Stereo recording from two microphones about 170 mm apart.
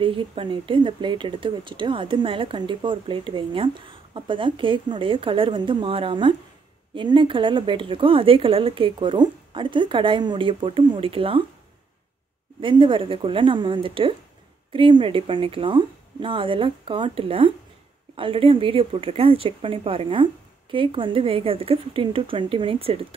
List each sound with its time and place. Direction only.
0.0 s speech: 30° right (ahead or behind)
12.5 s speech: 30° right (ahead or behind)